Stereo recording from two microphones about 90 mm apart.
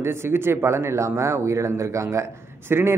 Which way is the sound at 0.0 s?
25° right (ahead or behind).